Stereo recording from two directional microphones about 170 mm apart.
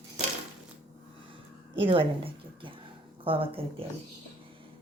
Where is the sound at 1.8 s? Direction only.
30° right (ahead or behind).